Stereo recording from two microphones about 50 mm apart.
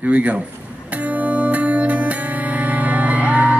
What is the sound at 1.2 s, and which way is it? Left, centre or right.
Music, right.